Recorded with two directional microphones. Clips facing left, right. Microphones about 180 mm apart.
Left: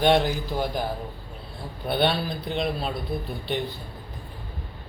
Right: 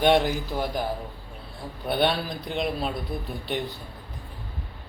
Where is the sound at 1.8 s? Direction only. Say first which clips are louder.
Left 1 dB; centre (ahead or behind).